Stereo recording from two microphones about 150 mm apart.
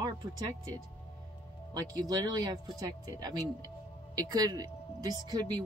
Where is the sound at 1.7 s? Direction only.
25° right (ahead or behind).